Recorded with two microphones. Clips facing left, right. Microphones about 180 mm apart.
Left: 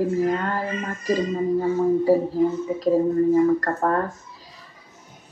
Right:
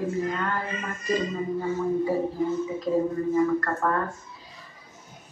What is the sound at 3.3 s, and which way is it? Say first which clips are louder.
Speech: left 5 dB; 35° left (ahead or behind).